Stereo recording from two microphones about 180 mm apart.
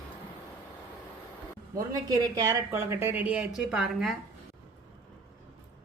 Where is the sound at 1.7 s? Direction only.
20° right (ahead or behind); by 4.1 s centre (ahead or behind).